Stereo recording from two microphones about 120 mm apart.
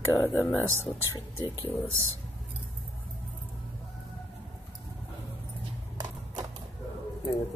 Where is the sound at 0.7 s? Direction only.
25° right (ahead or behind).